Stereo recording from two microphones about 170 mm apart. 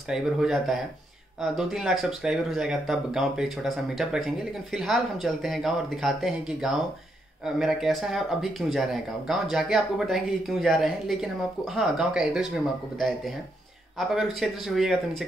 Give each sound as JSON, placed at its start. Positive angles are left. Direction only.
{"t": 0.1, "sound": "speech", "side_deg": 0}
{"t": 13.9, "sound": "speech", "side_deg": 0}